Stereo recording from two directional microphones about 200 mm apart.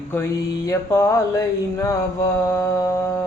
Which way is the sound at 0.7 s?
15° left (ahead or behind).